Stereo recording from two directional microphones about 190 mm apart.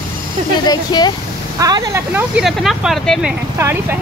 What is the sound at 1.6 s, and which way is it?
Speech, 20° right (ahead or behind).